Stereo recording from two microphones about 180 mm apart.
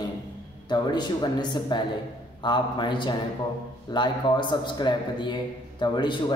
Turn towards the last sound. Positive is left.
turn(degrees=25)  # may be behind; listen again after turning